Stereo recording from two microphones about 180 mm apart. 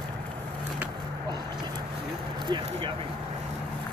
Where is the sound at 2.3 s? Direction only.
25° right (ahead or behind).